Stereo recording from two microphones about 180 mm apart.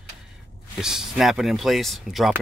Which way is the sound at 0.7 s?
5° right (ahead or behind).